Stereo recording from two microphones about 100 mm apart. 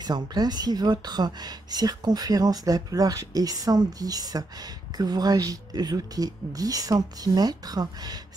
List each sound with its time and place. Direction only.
0.0 s a woman's voice: 45° right (ahead or behind)